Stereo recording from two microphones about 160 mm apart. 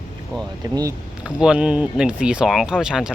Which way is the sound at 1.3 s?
5° right (ahead or behind).